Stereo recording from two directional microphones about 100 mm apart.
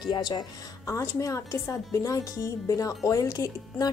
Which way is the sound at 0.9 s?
30° left (ahead or behind).